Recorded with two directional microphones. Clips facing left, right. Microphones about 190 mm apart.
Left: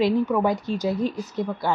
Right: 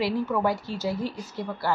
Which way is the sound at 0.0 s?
15° left (ahead or behind).